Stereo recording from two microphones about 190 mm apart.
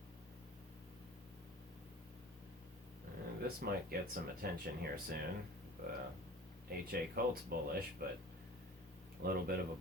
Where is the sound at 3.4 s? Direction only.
50° right (ahead or behind).